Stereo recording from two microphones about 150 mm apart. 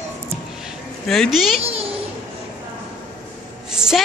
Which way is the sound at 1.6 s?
40° right (ahead or behind).